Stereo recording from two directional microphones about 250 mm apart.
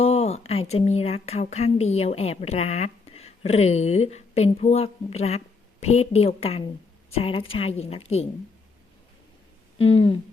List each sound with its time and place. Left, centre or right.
0.0 s a woman's voice: left
9.9 s a woman's voice: left